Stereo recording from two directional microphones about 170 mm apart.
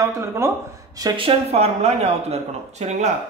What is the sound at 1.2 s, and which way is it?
Speech, 35° right (ahead or behind).